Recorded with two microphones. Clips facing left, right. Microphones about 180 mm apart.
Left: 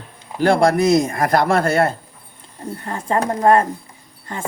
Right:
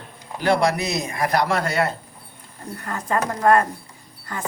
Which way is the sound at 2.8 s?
25° left (ahead or behind).